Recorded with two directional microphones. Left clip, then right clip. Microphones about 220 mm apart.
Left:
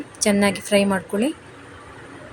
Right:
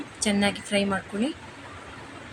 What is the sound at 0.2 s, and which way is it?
A woman's voice, 20° left (ahead or behind).